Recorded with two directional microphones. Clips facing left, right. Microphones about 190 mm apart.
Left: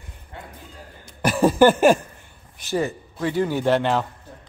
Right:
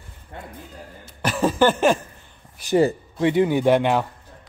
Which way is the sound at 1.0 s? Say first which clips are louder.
Left 3 dB; 10° left (ahead or behind).